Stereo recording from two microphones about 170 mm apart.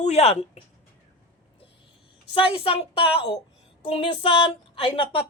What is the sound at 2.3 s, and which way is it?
A woman's voice, 30° left (ahead or behind).